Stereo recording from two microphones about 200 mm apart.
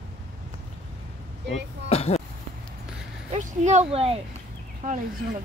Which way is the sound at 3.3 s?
35° right (ahead or behind).